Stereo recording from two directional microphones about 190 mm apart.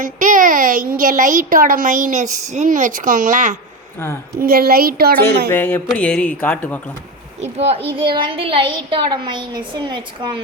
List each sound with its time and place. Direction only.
0.0 s a woman's voice: 45° right (ahead or behind)
4.4 s a woman's voice: 50° right (ahead or behind)
5.5 s speech: 10° left (ahead or behind)
7.4 s a child's voice: 35° right (ahead or behind)